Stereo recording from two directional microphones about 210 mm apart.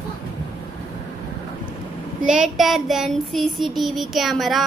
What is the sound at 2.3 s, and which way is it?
Child singing, centre (ahead or behind).